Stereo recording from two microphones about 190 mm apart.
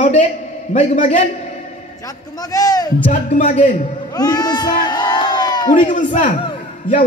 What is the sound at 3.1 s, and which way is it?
Speech, 45° left (ahead or behind).